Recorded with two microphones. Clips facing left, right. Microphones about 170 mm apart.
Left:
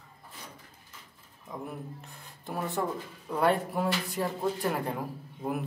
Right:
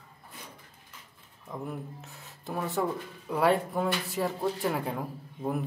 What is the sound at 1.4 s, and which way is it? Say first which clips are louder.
Speech: right 2 dB; centre (ahead or behind).